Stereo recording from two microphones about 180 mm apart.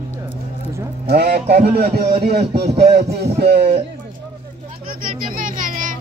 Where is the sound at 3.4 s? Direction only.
65° right (ahead or behind).